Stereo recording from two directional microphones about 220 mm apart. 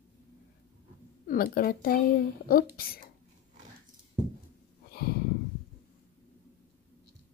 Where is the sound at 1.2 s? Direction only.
40° left (ahead or behind).